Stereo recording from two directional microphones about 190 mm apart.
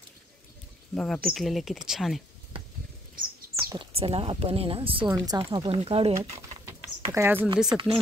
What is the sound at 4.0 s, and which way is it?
Speech, 30° right (ahead or behind).